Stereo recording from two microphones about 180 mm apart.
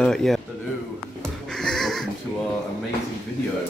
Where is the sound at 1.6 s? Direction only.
Centre (ahead or behind).